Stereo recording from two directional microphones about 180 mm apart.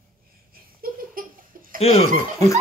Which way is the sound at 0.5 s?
55° right (ahead or behind).